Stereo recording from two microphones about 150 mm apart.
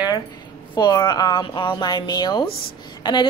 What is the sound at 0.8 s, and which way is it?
A woman's voice, 30° left (ahead or behind).